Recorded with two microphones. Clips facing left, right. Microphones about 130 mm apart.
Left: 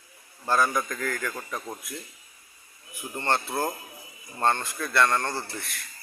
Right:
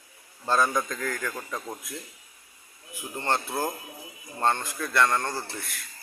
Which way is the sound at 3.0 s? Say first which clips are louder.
Left 1 dB; 15° right (ahead or behind).